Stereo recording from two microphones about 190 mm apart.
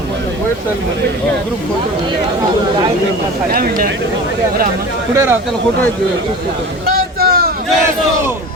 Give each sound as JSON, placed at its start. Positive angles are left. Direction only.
{"t": 3.5, "sound": "speech", "side_deg": -50}
{"t": 5.1, "sound": "speech", "side_deg": -10}
{"t": 6.8, "sound": "a sound", "side_deg": -50}